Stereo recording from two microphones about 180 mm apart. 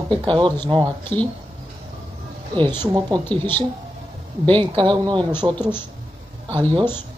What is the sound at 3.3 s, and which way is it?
Speech, 10° left (ahead or behind).